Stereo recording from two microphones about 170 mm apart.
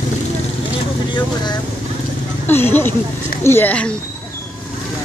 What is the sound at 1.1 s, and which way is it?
Speech, 25° left (ahead or behind).